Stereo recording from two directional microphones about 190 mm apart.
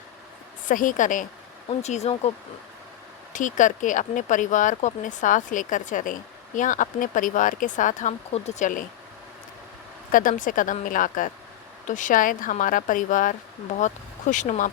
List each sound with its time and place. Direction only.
0.7 s speech: 45° left (ahead or behind)
3.3 s speech: 40° left (ahead or behind)
10.1 s speech: 45° left (ahead or behind)